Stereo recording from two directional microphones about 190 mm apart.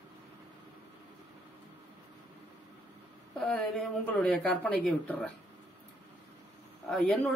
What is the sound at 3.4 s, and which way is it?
Speech, 5° left (ahead or behind).